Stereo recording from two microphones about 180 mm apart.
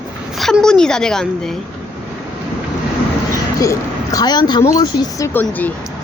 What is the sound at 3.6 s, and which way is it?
A woman's voice, 20° left (ahead or behind).